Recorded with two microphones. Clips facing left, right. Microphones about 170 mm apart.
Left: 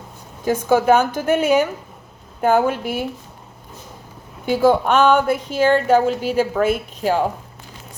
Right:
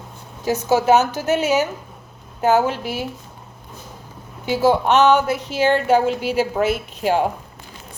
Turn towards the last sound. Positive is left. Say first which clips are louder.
# even
turn(degrees=40)  # may be behind; listen again after turning